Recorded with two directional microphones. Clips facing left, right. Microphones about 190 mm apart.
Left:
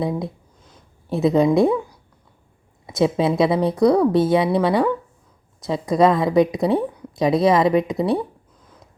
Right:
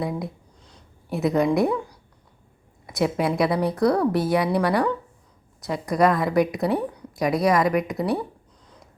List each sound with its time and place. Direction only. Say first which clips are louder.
0.0 s a woman's voice: left 4 dB; 25° left (ahead or behind)
2.8 s a woman's voice: left 4 dB; 25° left (ahead or behind)